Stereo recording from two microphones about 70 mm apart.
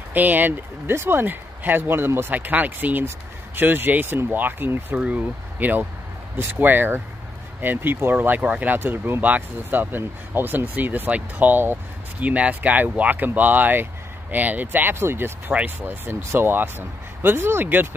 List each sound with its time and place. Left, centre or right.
0.1 s speech: right
4.9 s speech: centre